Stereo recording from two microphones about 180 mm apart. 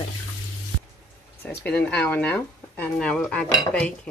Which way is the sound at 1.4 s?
10° left (ahead or behind).